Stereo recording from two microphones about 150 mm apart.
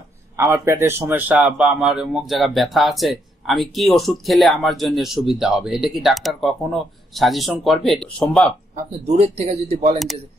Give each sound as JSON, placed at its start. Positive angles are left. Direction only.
{"t": 0.4, "sound": "a man's voice", "side_deg": -15}
{"t": 9.0, "sound": "speech", "side_deg": -45}